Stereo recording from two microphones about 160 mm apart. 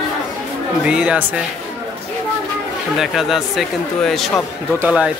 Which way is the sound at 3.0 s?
Centre (ahead or behind).